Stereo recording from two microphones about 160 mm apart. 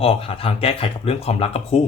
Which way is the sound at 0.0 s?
35° left (ahead or behind).